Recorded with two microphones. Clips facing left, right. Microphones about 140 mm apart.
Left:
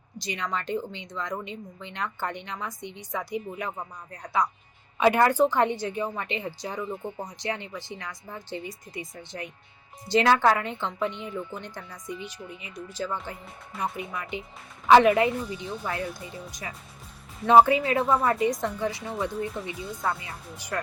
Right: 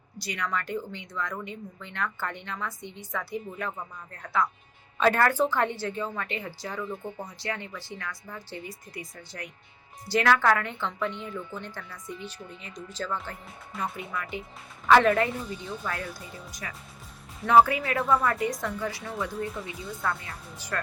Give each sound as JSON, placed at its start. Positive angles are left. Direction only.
{"t": 0.2, "sound": "a woman's voice", "side_deg": 20}